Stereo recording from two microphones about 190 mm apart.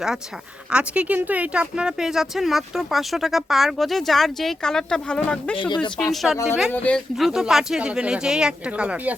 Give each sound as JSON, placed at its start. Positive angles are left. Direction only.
{"t": 0.7, "sound": "speech", "side_deg": -5}
{"t": 5.5, "sound": "speech", "side_deg": 25}
{"t": 6.0, "sound": "speech", "side_deg": 0}